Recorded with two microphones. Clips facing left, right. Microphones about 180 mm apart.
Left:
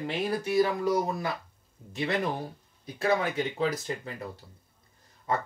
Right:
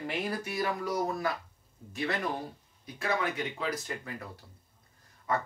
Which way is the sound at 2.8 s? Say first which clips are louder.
Left 5 dB; 30° left (ahead or behind).